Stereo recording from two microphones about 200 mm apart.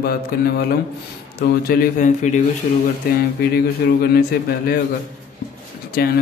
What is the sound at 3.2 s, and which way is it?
Speech, 50° left (ahead or behind).